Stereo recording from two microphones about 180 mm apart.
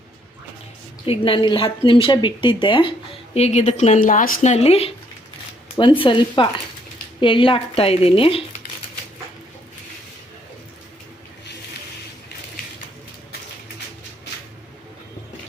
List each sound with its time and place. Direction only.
1.0 s a woman's voice: 30° left (ahead or behind)